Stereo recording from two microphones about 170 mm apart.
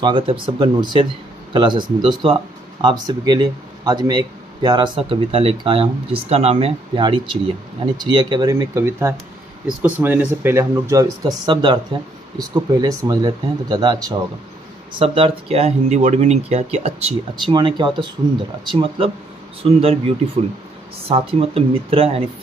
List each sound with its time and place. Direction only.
0.0 s speech: 30° right (ahead or behind)
17.5 s speech: 25° right (ahead or behind)
21.1 s speech: 35° right (ahead or behind)